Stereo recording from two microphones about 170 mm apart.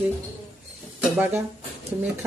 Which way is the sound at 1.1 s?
10° right (ahead or behind).